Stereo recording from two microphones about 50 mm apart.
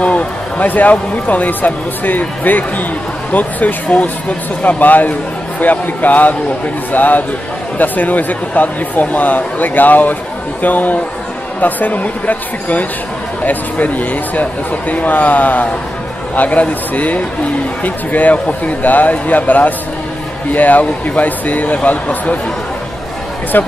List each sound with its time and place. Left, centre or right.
0.0 s a man's voice: left
23.5 s a man's voice: left